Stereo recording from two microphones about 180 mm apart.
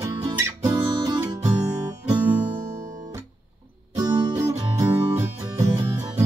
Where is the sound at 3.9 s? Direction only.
20° right (ahead or behind).